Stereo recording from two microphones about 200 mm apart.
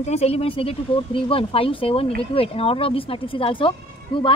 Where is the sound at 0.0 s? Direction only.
30° left (ahead or behind).